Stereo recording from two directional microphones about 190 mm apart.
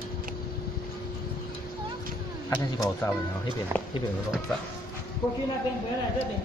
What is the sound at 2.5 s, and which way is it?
Speech, 10° left (ahead or behind).